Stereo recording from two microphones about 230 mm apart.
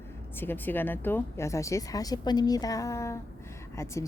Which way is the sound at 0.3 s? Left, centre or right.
Centre.